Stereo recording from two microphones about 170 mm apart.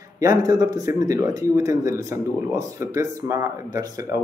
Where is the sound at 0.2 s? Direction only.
20° right (ahead or behind).